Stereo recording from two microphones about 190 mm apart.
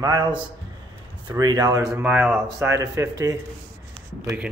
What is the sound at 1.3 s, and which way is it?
Speech, 20° right (ahead or behind).